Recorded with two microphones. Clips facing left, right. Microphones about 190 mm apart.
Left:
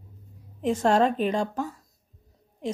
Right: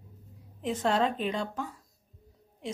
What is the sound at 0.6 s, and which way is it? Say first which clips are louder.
Speech: left 6 dB; 45° left (ahead or behind).